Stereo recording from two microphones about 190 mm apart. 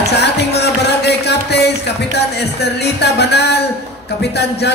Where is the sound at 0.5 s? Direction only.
60° left (ahead or behind).